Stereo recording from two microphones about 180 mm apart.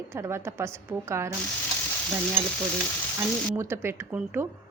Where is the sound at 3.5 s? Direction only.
15° right (ahead or behind).